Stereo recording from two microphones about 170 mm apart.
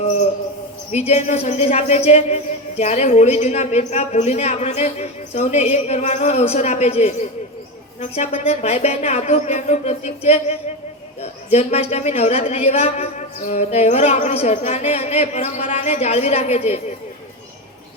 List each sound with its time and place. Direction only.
0.9 s speech: 40° left (ahead or behind)